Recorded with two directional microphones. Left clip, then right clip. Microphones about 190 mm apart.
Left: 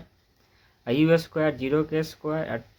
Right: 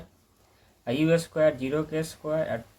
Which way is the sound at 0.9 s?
40° left (ahead or behind).